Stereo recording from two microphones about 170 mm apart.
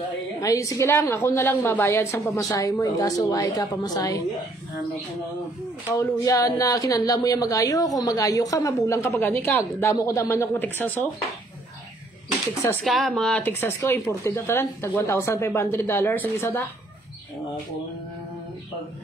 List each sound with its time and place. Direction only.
0.4 s a woman's voice: 20° left (ahead or behind)
5.9 s a woman's voice: 20° left (ahead or behind)
12.8 s a woman's voice: centre (ahead or behind)